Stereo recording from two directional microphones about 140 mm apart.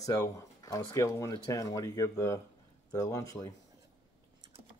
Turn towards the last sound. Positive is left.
turn(degrees=25)  # may be behind; listen again after turning